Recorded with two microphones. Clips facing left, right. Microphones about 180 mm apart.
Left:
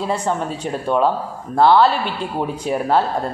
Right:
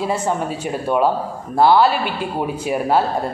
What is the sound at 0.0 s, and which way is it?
Speech, 5° right (ahead or behind).